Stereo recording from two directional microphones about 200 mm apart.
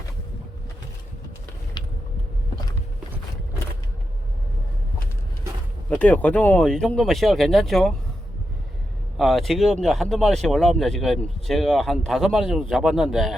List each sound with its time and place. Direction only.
1.8 s vehicle: 20° left (ahead or behind)
5.9 s speech: 5° left (ahead or behind)
9.1 s speech: centre (ahead or behind)